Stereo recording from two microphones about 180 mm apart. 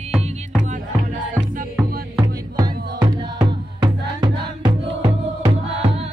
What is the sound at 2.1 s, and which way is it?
Music, 20° right (ahead or behind).